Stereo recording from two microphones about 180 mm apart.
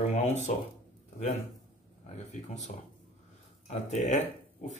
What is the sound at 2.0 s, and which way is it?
Speech, 40° left (ahead or behind).